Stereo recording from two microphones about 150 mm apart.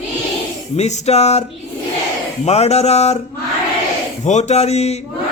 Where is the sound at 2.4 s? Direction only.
45° left (ahead or behind).